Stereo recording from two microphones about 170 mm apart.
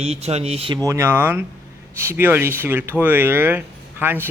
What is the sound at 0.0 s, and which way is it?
Speech, 35° right (ahead or behind).